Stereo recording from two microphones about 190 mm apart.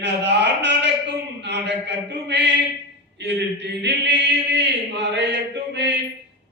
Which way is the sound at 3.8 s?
65° right (ahead or behind).